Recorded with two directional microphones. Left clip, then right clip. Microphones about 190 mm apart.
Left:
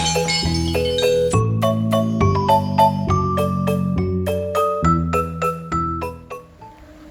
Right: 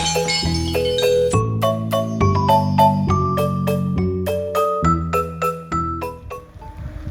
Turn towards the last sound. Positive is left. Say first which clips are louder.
# even
turn(degrees=0)  # may be behind; listen again after turning